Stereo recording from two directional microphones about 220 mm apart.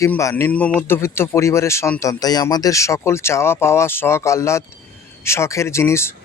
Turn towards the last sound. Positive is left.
turn(degrees=10)  # may be behind; listen again after turning